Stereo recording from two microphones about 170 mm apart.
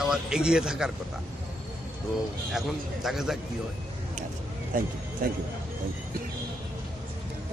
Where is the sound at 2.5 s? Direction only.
Centre (ahead or behind).